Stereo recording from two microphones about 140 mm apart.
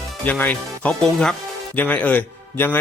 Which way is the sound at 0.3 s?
10° left (ahead or behind).